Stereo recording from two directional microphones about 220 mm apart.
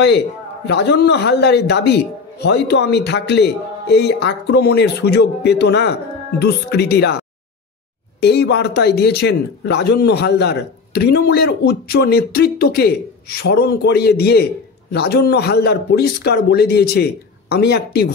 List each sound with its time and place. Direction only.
0.7 s speech: 50° left (ahead or behind)
8.2 s speech: 50° left (ahead or behind)